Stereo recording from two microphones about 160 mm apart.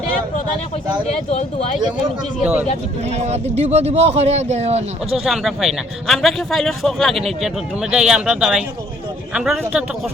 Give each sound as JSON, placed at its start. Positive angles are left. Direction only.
{"t": 1.0, "sound": "speech", "side_deg": 45}
{"t": 2.4, "sound": "speech", "side_deg": -10}
{"t": 3.0, "sound": "a man's voice", "side_deg": -40}
{"t": 5.1, "sound": "a man's voice", "side_deg": 0}